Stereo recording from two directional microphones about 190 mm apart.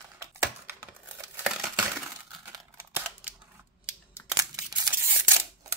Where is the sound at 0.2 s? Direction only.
15° right (ahead or behind).